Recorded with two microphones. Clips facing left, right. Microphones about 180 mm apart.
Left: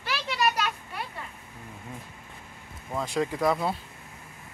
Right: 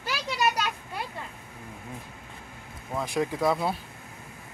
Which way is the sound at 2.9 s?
15° right (ahead or behind).